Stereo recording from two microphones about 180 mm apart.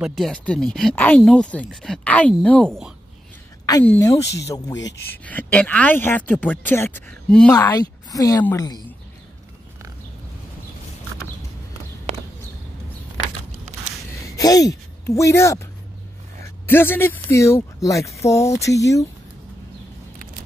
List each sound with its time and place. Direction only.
0.0 s speech: centre (ahead or behind)
3.8 s speech: 10° left (ahead or behind)
4.2 s speech: 70° left (ahead or behind)
4.5 s a woman's voice: 20° left (ahead or behind)
5.1 s speech: 10° left (ahead or behind)
7.6 s a woman's voice: 20° left (ahead or behind)
14.3 s speech: 20° left (ahead or behind)